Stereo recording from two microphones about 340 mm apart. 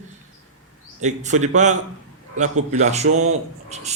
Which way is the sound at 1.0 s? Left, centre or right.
Right.